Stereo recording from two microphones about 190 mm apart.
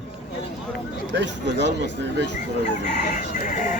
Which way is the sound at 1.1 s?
65° right (ahead or behind).